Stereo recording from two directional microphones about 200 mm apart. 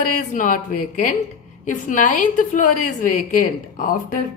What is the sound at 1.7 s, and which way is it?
A woman's voice, 40° left (ahead or behind).